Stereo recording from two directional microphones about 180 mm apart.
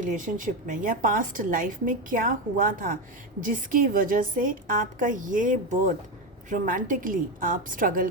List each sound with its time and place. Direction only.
0.0 s a woman's voice: 45° right (ahead or behind)